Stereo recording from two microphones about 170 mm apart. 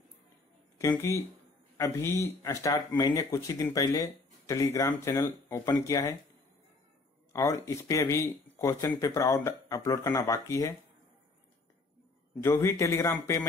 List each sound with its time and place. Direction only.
0.7 s speech: 20° left (ahead or behind)
7.3 s speech: 15° left (ahead or behind)
12.4 s speech: 15° left (ahead or behind)